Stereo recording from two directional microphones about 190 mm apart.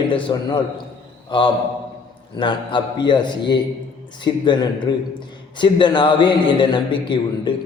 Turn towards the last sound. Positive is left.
turn(degrees=25)  # may be behind; listen again after turning